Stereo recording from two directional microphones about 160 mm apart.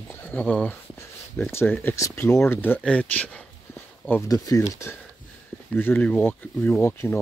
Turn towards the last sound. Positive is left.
turn(degrees=15)  # may be behind; listen again after turning